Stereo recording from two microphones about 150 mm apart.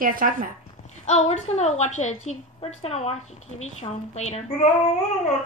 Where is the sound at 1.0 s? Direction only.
50° left (ahead or behind).